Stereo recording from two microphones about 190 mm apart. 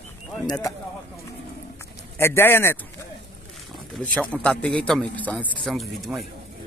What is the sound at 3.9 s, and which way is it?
A man's voice, 5° left (ahead or behind).